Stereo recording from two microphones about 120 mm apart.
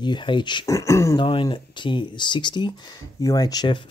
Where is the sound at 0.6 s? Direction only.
25° left (ahead or behind).